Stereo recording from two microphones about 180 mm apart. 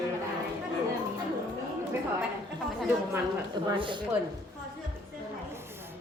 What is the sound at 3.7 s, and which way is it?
Speech, 25° right (ahead or behind).